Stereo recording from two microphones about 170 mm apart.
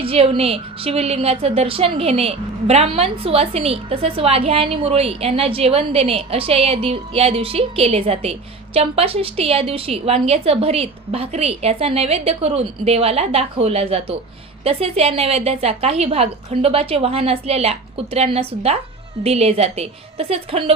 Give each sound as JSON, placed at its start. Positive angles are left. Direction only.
{"t": 0.0, "sound": "a woman's voice", "side_deg": -35}